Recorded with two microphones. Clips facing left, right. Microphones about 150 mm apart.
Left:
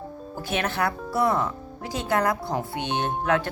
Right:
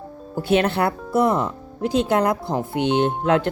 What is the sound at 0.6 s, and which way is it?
Speech, 30° right (ahead or behind).